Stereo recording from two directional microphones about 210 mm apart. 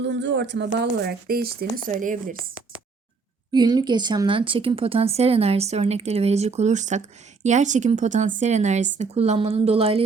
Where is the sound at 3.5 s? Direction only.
20° right (ahead or behind).